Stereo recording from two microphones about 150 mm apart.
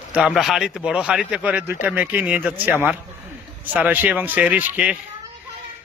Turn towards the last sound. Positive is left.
turn(degrees=-10)  # may be behind; listen again after turning